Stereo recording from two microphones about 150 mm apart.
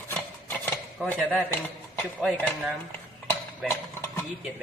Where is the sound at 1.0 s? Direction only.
5° left (ahead or behind).